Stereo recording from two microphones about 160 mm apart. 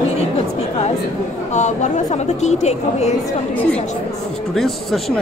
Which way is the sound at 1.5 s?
45° left (ahead or behind).